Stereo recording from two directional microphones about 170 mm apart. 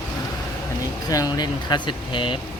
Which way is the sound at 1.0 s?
25° left (ahead or behind).